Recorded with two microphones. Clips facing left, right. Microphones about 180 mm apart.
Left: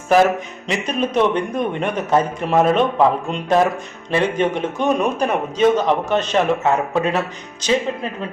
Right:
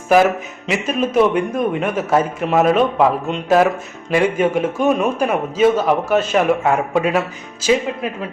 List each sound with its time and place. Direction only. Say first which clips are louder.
0.7 s a man's voice: right 2 dB; 5° right (ahead or behind)